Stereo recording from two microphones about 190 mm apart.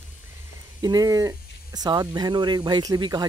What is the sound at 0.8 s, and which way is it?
Speech, 20° right (ahead or behind).